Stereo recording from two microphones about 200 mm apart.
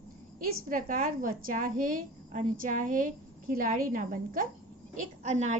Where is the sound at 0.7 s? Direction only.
45° right (ahead or behind).